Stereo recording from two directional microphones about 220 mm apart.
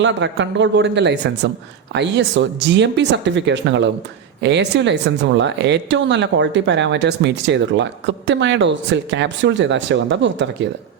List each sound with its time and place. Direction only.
0.0 s speech: 55° right (ahead or behind)